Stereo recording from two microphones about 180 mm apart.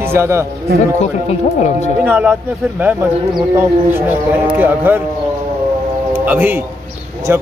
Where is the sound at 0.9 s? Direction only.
40° left (ahead or behind).